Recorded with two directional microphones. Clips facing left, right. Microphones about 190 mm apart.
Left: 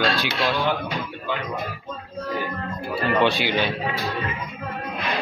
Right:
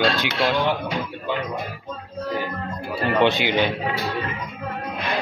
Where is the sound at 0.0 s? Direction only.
20° right (ahead or behind).